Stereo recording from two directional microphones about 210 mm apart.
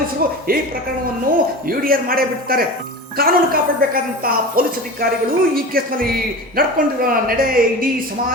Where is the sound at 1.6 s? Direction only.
45° right (ahead or behind).